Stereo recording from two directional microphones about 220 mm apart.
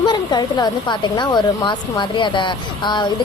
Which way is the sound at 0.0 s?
20° left (ahead or behind).